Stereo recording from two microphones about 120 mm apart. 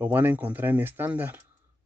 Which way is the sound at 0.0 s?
15° right (ahead or behind).